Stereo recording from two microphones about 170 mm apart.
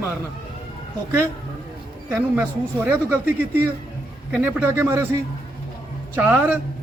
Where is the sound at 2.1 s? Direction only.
10° right (ahead or behind).